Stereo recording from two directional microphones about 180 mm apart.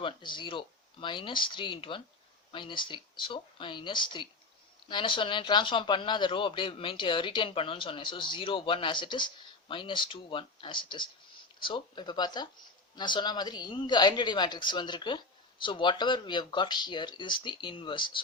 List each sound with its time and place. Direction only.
0.0 s a man's voice: 25° left (ahead or behind)